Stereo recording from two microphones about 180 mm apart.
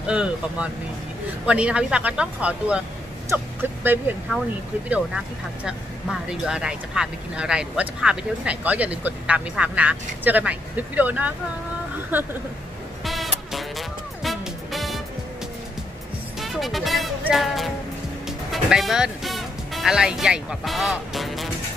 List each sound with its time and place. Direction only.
0.0 s speech: 5° right (ahead or behind)
3.8 s speech: 10° right (ahead or behind)
13.0 s music: centre (ahead or behind)
16.3 s music: centre (ahead or behind)
18.5 s speech: centre (ahead or behind)